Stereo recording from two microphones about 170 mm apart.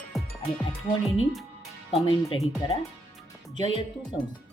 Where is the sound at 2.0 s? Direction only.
30° left (ahead or behind).